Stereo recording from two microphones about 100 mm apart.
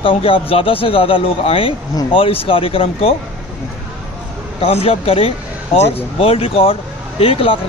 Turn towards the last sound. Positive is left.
turn(degrees=70)  # may be behind; listen again after turning